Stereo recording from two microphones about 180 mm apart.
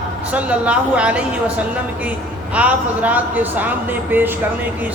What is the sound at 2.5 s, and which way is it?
Speech, 10° right (ahead or behind).